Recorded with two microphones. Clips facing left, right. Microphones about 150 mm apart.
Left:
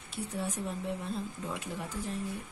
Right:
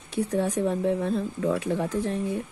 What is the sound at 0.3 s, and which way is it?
Speech, 90° right.